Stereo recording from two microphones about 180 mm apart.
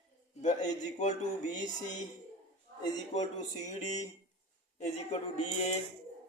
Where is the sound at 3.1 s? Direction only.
40° left (ahead or behind).